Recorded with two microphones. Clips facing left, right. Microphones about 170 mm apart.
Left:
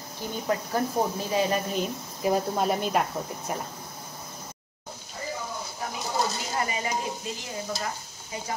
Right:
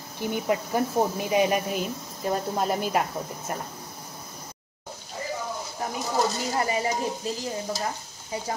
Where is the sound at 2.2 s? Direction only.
5° left (ahead or behind).